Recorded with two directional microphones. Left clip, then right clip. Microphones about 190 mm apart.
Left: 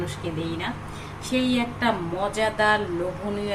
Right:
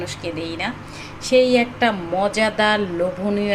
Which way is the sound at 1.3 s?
30° right (ahead or behind).